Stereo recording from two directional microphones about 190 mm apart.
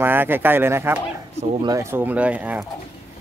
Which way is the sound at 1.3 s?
35° right (ahead or behind).